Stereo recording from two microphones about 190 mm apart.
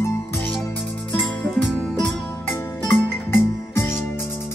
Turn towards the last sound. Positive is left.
turn(degrees=10)  # may be behind; listen again after turning